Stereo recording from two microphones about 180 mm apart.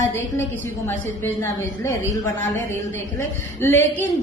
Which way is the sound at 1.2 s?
15° left (ahead or behind).